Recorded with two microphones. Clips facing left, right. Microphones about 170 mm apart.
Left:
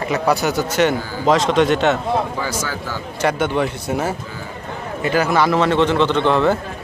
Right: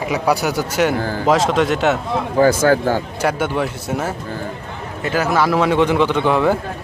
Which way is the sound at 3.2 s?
5° right (ahead or behind).